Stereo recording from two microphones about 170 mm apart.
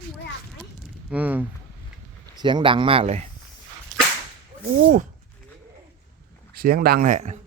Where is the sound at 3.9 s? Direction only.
50° right (ahead or behind).